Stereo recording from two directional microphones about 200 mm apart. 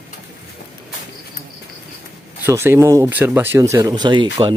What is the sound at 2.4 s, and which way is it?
Speech, 10° right (ahead or behind).